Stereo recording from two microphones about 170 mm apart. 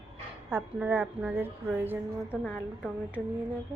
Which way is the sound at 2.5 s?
5° left (ahead or behind).